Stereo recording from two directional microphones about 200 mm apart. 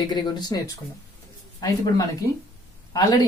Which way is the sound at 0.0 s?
20° left (ahead or behind).